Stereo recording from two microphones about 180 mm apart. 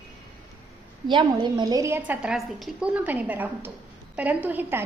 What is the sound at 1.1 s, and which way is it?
A woman's voice, 25° right (ahead or behind).